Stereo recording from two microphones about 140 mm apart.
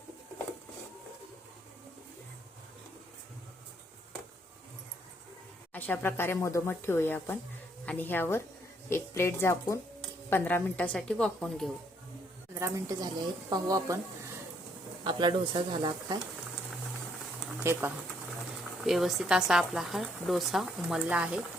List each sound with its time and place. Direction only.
5.7 s a woman's voice: 15° left (ahead or behind)
12.5 s a woman's voice: 25° right (ahead or behind)
15.0 s speech: 35° right (ahead or behind)
17.6 s speech: 15° right (ahead or behind)
18.8 s a woman's voice: centre (ahead or behind)